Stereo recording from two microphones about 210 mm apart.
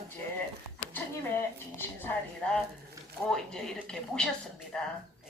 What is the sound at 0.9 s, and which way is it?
A woman's voice, 10° left (ahead or behind).